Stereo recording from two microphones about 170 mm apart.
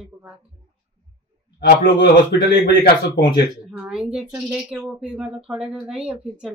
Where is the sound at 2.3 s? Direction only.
75° left (ahead or behind).